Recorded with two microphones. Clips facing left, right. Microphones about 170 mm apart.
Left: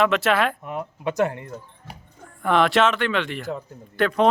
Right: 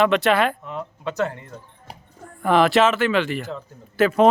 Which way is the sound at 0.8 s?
15° left (ahead or behind).